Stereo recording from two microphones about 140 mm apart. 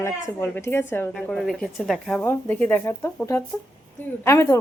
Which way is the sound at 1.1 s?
5° left (ahead or behind).